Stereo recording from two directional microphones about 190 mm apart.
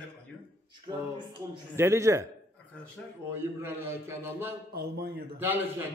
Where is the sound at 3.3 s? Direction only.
15° right (ahead or behind).